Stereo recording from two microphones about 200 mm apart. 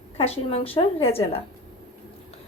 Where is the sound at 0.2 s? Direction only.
30° left (ahead or behind).